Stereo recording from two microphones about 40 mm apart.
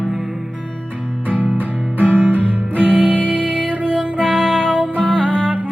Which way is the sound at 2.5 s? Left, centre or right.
Left.